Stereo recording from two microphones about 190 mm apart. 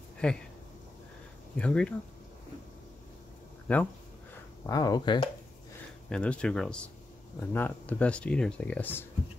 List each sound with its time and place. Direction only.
0.2 s speech: 5° left (ahead or behind)
1.6 s speech: 5° left (ahead or behind)
3.7 s speech: 10° left (ahead or behind)
4.6 s speech: 20° left (ahead or behind)
6.0 s speech: 5° left (ahead or behind)